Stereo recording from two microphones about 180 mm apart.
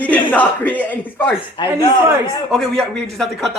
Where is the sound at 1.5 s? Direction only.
25° left (ahead or behind).